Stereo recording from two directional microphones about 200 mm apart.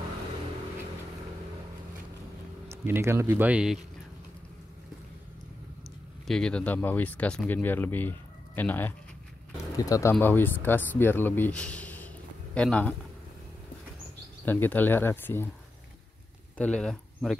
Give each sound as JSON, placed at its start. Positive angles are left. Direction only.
{"t": 2.7, "sound": "speech", "side_deg": -10}
{"t": 6.2, "sound": "a man's voice", "side_deg": 5}
{"t": 14.4, "sound": "speech", "side_deg": 10}
{"t": 16.5, "sound": "speech", "side_deg": 5}